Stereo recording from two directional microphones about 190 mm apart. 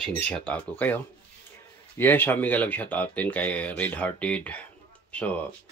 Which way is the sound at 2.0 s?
10° left (ahead or behind).